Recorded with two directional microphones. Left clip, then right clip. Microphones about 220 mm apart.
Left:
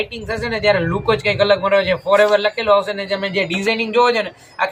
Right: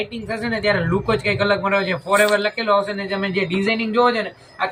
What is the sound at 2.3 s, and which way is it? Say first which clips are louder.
A man's voice: left 3 dB; 45° left (ahead or behind).